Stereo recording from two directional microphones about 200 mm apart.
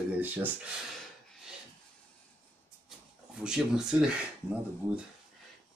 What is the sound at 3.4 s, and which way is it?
Speech, 5° right (ahead or behind).